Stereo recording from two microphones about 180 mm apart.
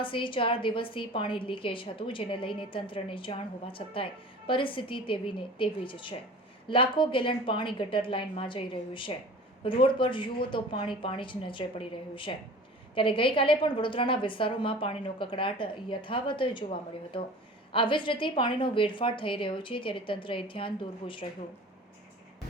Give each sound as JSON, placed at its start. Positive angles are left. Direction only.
{"t": 0.0, "sound": "a woman's voice", "side_deg": 30}